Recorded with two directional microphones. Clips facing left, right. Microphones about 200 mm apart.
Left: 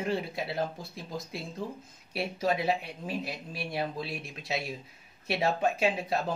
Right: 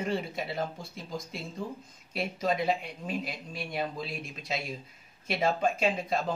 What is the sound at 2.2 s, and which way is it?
Speech, 5° left (ahead or behind).